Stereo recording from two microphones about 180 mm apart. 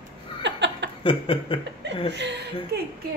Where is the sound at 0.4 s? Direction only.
80° right.